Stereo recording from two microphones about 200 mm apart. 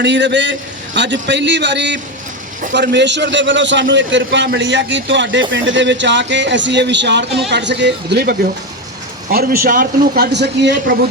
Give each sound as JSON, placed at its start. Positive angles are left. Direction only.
{"t": 0.0, "sound": "a man's voice", "side_deg": -60}